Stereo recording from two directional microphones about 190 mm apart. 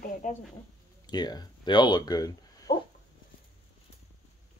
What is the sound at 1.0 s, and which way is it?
Speech, 20° left (ahead or behind).